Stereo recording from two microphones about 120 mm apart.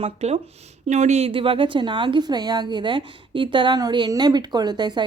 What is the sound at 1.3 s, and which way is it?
A woman's voice, 50° right (ahead or behind).